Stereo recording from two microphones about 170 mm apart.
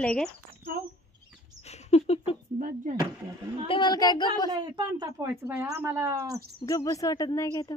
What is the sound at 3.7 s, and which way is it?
Speech, 25° left (ahead or behind).